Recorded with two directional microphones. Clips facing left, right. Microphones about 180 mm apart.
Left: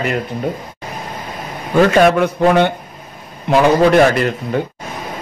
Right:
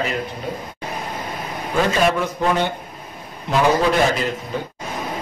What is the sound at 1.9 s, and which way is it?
Speech, 65° left (ahead or behind).